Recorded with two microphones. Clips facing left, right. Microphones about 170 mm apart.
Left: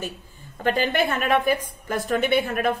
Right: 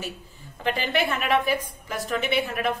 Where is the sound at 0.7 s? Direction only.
45° left (ahead or behind).